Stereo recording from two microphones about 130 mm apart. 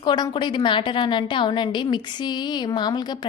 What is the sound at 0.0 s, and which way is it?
A woman's voice, 35° left (ahead or behind).